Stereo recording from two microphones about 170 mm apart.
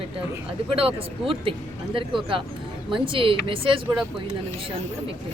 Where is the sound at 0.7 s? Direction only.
35° right (ahead or behind).